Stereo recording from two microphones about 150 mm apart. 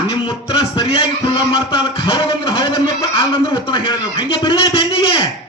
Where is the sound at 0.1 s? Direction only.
35° left (ahead or behind).